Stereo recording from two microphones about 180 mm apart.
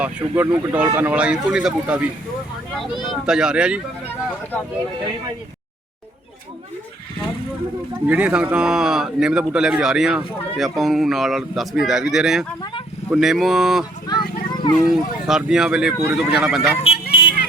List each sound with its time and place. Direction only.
0.0 s speech: 10° right (ahead or behind)
3.1 s speech: 5° right (ahead or behind)
8.0 s speech: 10° right (ahead or behind)
14.1 s a sound: 25° left (ahead or behind)
14.8 s speech: centre (ahead or behind)
16.8 s a sound: 30° left (ahead or behind)